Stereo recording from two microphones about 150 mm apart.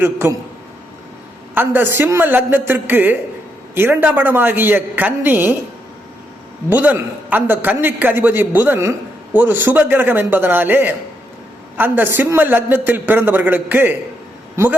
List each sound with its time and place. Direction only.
0.0 s a man's voice: 15° right (ahead or behind)
1.5 s a man's voice: 15° right (ahead or behind)
6.7 s a man's voice: 10° right (ahead or behind)